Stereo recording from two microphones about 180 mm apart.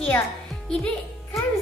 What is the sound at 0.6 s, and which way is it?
Music, 5° left (ahead or behind).